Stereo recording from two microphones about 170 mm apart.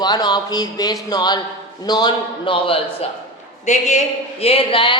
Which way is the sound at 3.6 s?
45° left (ahead or behind).